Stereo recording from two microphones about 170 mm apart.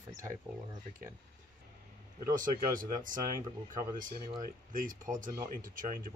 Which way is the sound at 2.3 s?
50° right (ahead or behind).